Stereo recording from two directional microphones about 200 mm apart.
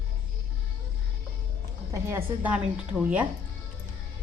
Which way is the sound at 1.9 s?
15° right (ahead or behind).